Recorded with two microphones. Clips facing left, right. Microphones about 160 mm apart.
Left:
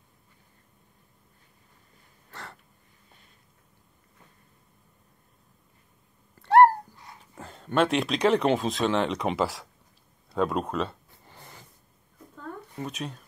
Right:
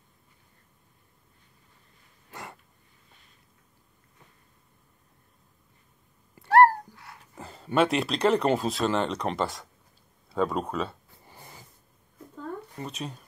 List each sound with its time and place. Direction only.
6.4 s cat: 20° left (ahead or behind)
7.3 s speech: 5° right (ahead or behind)
10.3 s a sound: centre (ahead or behind)